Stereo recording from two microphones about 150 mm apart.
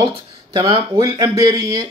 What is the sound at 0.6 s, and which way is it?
Speech, 40° right (ahead or behind).